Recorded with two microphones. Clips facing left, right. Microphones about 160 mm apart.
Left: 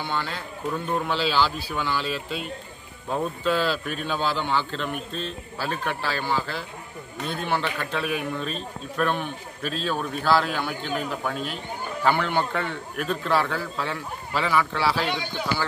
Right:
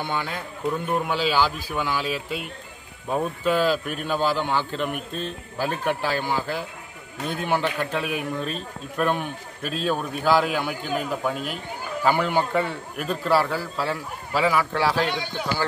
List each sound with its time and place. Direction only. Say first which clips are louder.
0.0 s a man's voice: right 1 dB; 15° right (ahead or behind)